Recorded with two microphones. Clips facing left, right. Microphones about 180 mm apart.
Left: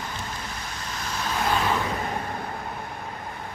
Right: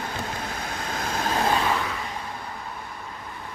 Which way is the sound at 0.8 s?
55° right (ahead or behind).